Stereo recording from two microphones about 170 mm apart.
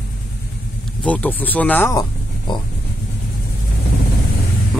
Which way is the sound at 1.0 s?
10° left (ahead or behind).